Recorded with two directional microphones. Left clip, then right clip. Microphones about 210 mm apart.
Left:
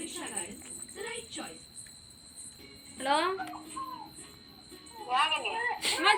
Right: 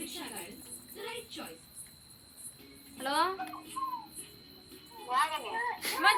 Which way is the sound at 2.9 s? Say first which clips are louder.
Left 2 dB; 10° right (ahead or behind).